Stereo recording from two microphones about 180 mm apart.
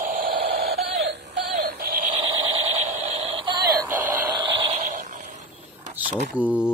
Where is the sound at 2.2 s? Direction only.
30° right (ahead or behind).